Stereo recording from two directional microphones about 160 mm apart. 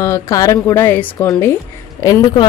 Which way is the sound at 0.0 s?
20° left (ahead or behind).